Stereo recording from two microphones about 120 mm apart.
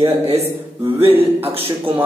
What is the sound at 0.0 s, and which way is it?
Speech, 55° right (ahead or behind).